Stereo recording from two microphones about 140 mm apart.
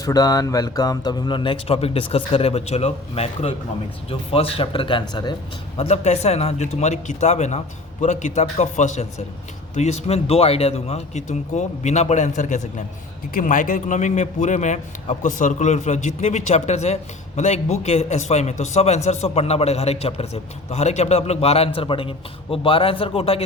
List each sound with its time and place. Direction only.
0.0 s speech: 25° left (ahead or behind)
5.7 s a man's voice: 50° left (ahead or behind)
13.3 s a man's voice: 70° left (ahead or behind); by 23.4 s 45° left (ahead or behind)